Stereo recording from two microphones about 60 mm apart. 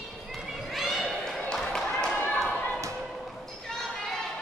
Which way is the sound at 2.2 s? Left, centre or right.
Left.